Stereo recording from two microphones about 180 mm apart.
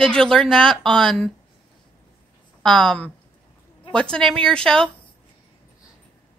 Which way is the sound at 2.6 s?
Centre (ahead or behind).